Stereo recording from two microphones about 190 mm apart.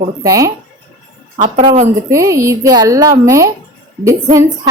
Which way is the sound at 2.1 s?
15° right (ahead or behind).